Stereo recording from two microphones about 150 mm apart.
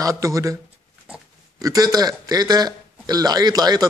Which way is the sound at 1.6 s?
25° right (ahead or behind).